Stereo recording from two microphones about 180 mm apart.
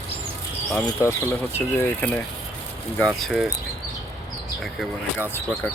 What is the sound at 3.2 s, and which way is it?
Speech, centre (ahead or behind).